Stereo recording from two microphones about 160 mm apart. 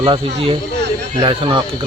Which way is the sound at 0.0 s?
35° right (ahead or behind).